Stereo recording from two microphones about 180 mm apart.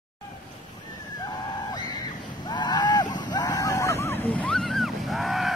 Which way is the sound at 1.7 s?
20° left (ahead or behind).